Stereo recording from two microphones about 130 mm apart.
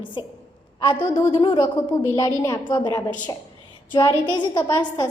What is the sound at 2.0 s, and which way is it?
A woman's voice, 30° left (ahead or behind).